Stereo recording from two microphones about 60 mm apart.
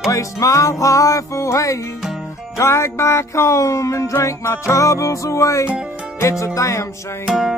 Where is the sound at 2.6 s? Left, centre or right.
Left.